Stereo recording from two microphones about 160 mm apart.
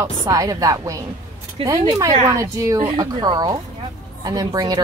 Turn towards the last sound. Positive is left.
turn(degrees=-25)  # may be behind; listen again after turning